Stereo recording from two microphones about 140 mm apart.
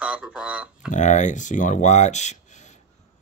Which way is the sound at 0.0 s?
10° right (ahead or behind).